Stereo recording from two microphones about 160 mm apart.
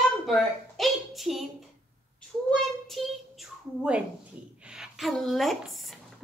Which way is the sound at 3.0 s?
Centre (ahead or behind).